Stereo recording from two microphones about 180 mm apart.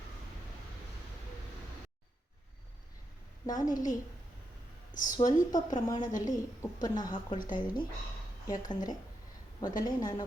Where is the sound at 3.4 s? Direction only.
20° left (ahead or behind).